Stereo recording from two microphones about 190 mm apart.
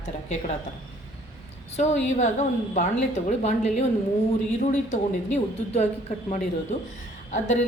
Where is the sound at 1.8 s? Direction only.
35° left (ahead or behind).